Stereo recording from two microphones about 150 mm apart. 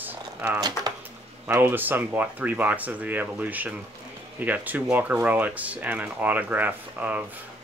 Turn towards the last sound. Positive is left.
turn(degrees=-10)  # may be behind; listen again after turning